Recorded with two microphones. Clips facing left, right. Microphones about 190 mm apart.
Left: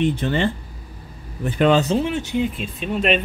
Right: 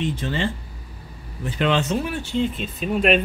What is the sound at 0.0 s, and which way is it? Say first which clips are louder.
Speech: left 5 dB; 60° left (ahead or behind).